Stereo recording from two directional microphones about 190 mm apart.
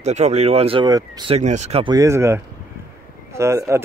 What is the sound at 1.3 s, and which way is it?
Speech, 40° right (ahead or behind).